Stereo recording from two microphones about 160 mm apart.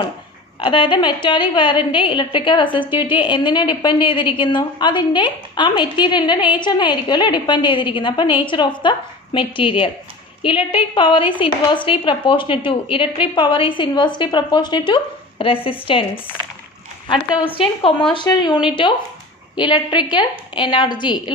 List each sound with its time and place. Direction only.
0.6 s a woman's voice: 30° left (ahead or behind)
18.1 s a woman's voice: 25° left (ahead or behind)